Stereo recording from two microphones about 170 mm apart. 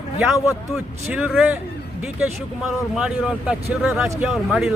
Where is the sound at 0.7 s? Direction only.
5° right (ahead or behind).